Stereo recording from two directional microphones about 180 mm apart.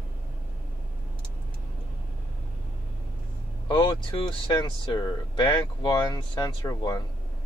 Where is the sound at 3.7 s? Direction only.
25° left (ahead or behind).